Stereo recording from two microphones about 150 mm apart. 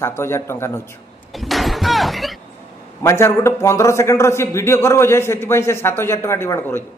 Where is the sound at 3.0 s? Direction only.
15° left (ahead or behind).